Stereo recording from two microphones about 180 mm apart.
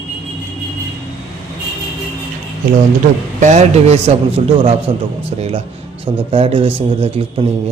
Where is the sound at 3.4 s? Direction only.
40° right (ahead or behind).